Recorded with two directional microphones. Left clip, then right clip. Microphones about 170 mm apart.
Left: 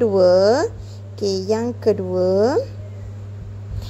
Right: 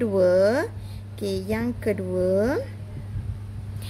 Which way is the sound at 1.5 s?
Centre (ahead or behind).